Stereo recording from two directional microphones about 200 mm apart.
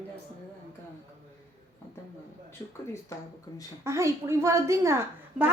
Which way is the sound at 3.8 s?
15° right (ahead or behind).